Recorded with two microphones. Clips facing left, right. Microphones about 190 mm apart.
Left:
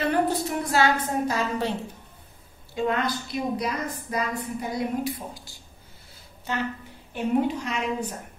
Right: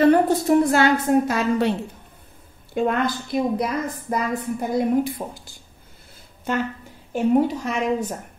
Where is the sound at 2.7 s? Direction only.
55° right (ahead or behind).